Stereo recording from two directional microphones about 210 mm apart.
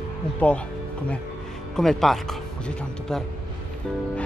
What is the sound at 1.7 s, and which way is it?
Speech, centre (ahead or behind).